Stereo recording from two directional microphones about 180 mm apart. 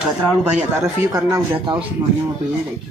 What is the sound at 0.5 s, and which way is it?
Speech, 15° right (ahead or behind).